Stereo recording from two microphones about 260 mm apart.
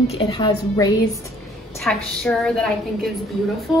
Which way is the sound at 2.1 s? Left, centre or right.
Centre.